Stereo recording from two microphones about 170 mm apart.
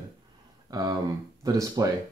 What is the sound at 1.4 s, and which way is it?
Speech, 20° right (ahead or behind).